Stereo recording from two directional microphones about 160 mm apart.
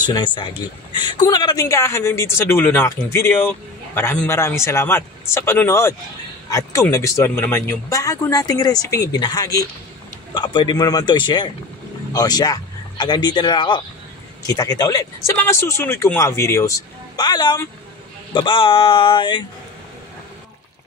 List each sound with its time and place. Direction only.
0.0 s speech: 30° left (ahead or behind)